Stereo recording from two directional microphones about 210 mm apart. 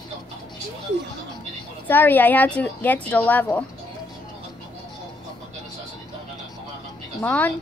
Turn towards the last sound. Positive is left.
turn(degrees=10)  # may be behind; listen again after turning